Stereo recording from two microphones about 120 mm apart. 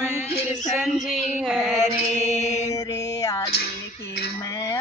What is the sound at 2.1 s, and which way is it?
Mantra, 70° left (ahead or behind).